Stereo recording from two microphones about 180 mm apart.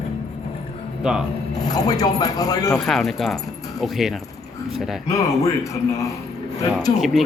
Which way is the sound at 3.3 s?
20° left (ahead or behind).